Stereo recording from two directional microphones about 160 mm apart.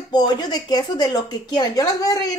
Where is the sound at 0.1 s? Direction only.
25° left (ahead or behind).